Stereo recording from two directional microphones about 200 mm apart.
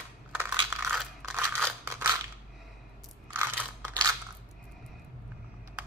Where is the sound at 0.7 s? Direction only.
5° right (ahead or behind).